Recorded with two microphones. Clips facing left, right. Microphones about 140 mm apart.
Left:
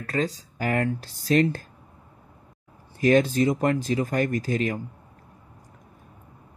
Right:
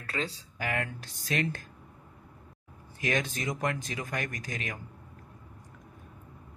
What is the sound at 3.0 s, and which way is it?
Speech, 35° left (ahead or behind).